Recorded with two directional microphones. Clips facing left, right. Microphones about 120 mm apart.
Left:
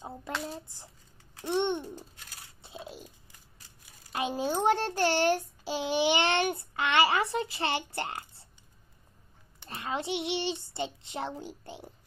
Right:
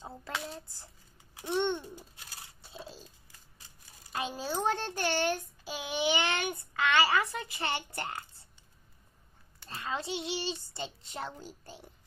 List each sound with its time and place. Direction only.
0.0 s hands: 15° left (ahead or behind)
1.5 s child singing: 20° left (ahead or behind)
4.1 s child singing: 25° left (ahead or behind)
9.6 s child singing: 20° left (ahead or behind)